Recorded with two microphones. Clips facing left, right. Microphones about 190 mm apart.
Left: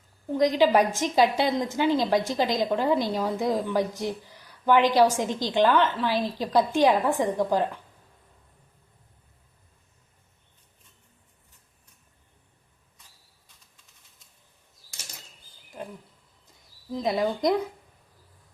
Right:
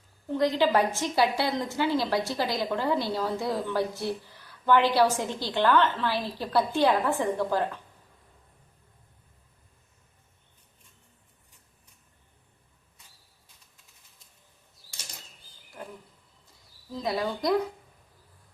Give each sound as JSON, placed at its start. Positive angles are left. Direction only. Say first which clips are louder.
{"t": 0.3, "sound": "a woman's voice", "louder": "left 3 dB", "side_deg": 15}
{"t": 15.8, "sound": "roaring cats", "louder": "left 4 dB", "side_deg": 20}
{"t": 16.9, "sound": "a woman's voice", "louder": "left 4 dB", "side_deg": 20}